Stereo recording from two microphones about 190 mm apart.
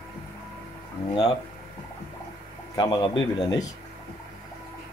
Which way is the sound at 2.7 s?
25° left (ahead or behind).